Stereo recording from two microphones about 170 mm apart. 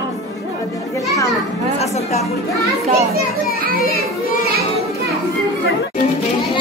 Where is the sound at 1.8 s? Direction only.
40° left (ahead or behind).